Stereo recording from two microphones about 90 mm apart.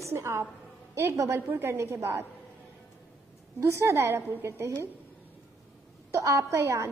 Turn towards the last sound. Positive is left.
turn(degrees=-30)  # may be behind; listen again after turning